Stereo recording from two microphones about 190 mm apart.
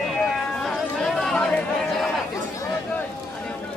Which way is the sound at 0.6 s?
Centre (ahead or behind).